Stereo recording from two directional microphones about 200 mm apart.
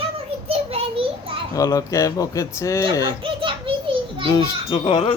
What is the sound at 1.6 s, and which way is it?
Speech, 15° left (ahead or behind).